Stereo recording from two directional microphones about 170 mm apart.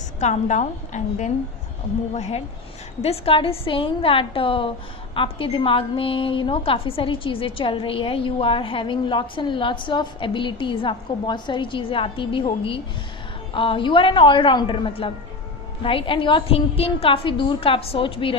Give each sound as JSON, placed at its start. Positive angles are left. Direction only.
{"t": 0.2, "sound": "a woman's voice", "side_deg": 45}